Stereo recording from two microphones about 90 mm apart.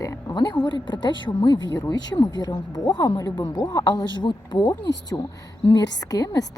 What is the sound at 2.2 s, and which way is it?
A woman's voice, 45° left (ahead or behind).